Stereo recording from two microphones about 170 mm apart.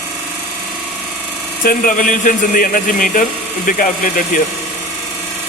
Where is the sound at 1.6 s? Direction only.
55° left (ahead or behind).